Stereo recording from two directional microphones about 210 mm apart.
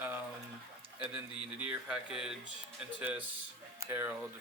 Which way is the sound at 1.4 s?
5° right (ahead or behind).